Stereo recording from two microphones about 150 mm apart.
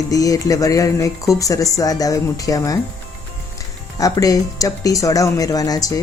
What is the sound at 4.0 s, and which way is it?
Speech, 25° left (ahead or behind).